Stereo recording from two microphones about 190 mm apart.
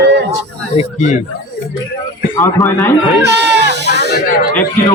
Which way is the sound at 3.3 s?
65° right (ahead or behind).